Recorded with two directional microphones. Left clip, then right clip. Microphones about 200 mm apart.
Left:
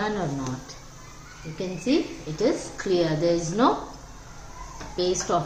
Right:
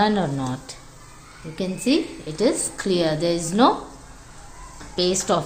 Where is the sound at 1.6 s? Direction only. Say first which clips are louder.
Right 3 dB; 60° right (ahead or behind).